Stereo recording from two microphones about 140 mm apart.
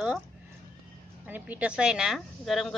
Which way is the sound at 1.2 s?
10° right (ahead or behind).